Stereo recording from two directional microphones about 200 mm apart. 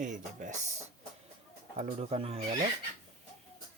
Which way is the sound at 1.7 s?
35° right (ahead or behind).